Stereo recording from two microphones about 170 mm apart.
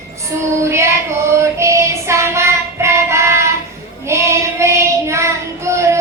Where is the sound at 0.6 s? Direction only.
15° right (ahead or behind).